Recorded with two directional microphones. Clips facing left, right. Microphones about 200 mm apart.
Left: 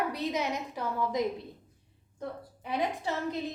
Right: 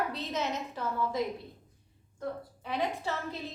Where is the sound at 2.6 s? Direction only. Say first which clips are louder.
Left 1 dB; 15° left (ahead or behind).